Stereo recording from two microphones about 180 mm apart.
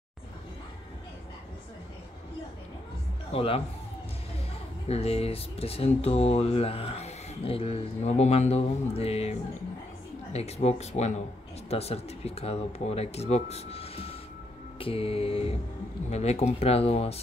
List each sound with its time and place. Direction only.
3.3 s speech: 30° left (ahead or behind)
4.8 s speech: 35° left (ahead or behind)